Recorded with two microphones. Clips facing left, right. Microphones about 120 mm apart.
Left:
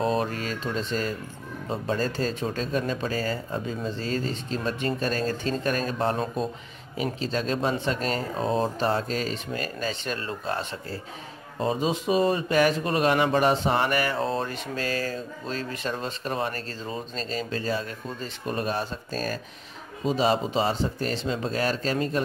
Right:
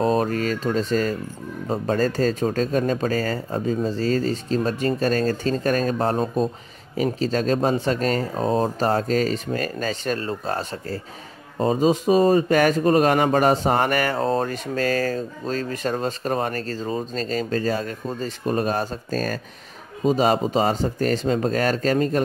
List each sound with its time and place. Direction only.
0.0 s speech: 40° right (ahead or behind)